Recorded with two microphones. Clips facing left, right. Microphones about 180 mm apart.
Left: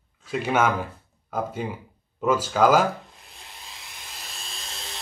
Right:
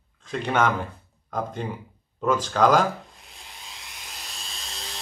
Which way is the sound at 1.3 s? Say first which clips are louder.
Left 1 dB; 5° left (ahead or behind).